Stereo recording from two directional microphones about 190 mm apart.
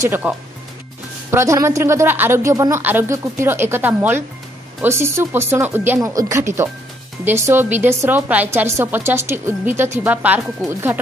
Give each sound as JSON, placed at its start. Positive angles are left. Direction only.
{"t": 0.0, "sound": "speech", "side_deg": -10}